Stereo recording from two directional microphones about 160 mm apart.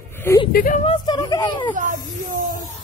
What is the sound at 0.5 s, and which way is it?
Speech, 60° left (ahead or behind).